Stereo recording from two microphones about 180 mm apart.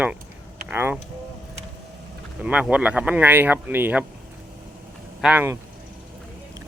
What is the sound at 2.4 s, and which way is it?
Speech, 5° right (ahead or behind).